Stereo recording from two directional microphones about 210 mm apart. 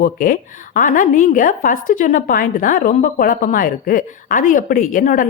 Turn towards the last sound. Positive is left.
turn(degrees=40)  # may be behind; listen again after turning